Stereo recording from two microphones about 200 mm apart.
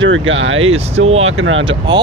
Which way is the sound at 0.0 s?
75° right (ahead or behind).